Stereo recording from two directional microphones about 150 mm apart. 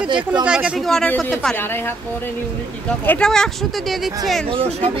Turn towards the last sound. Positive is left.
turn(degrees=-40)  # may be behind; listen again after turning